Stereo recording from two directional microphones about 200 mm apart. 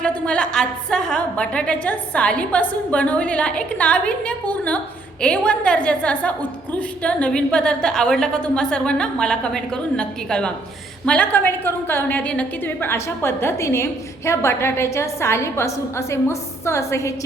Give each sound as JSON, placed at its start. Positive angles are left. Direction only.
{"t": 0.0, "sound": "a woman's voice", "side_deg": 5}